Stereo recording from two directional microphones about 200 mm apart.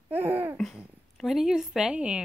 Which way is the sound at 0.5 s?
Centre (ahead or behind).